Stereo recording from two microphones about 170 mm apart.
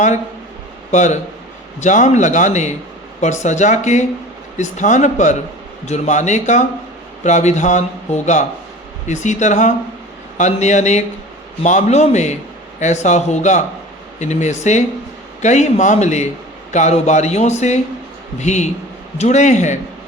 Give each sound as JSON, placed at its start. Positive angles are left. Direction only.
{"t": 0.9, "sound": "a man's voice", "side_deg": 45}